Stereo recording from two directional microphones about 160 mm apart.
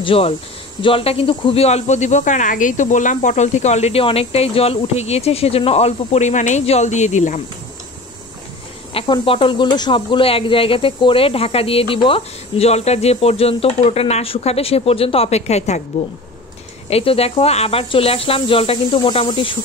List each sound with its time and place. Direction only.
0.0 s speech: 35° left (ahead or behind)
8.9 s speech: 30° left (ahead or behind)
16.9 s speech: 35° left (ahead or behind)